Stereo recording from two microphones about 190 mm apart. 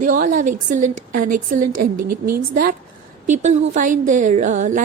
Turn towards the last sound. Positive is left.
turn(degrees=-40)  # may be behind; listen again after turning